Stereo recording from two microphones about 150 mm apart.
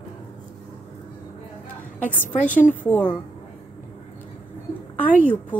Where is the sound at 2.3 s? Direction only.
55° left (ahead or behind).